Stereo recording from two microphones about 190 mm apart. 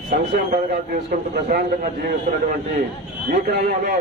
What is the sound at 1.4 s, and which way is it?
Speech, 50° right (ahead or behind).